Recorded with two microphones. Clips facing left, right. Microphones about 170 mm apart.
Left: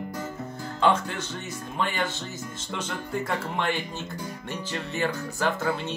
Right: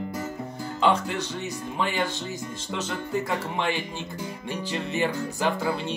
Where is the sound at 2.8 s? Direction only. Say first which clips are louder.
Right 2 dB; 5° right (ahead or behind).